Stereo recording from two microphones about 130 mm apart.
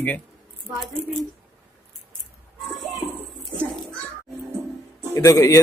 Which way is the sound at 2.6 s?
Centre (ahead or behind).